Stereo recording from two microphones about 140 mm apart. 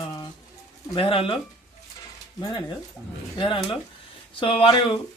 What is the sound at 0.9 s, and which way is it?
Speech, 40° left (ahead or behind).